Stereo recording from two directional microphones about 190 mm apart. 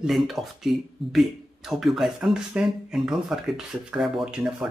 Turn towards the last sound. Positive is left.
turn(degrees=-5)  # may be behind; listen again after turning